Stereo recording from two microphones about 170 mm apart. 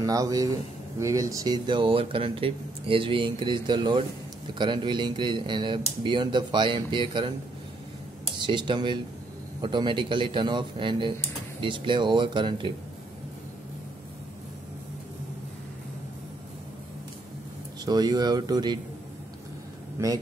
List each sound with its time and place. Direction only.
0.0 s speech: 20° right (ahead or behind)
8.5 s speech: 25° right (ahead or behind)
17.8 s speech: 25° right (ahead or behind)
20.0 s a man's voice: 15° right (ahead or behind)